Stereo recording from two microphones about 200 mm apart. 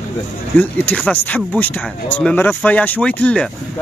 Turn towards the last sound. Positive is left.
turn(degrees=5)  # may be behind; listen again after turning